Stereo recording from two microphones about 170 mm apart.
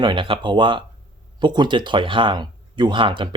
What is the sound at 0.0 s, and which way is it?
Speech, 30° right (ahead or behind).